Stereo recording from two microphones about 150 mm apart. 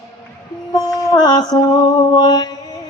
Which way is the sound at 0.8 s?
30° left (ahead or behind).